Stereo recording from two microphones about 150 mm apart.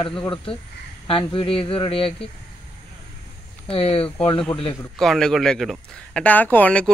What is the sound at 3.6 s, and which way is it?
Speech, 40° left (ahead or behind).